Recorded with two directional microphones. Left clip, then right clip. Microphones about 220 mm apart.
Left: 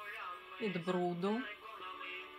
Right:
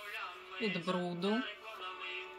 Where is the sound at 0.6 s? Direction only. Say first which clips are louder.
Right 1 dB; 10° left (ahead or behind).